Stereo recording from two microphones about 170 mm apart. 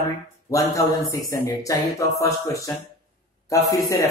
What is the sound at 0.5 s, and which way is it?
Speech, 20° left (ahead or behind).